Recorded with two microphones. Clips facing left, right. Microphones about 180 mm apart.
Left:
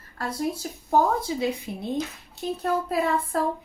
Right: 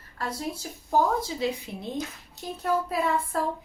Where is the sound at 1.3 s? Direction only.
55° left (ahead or behind).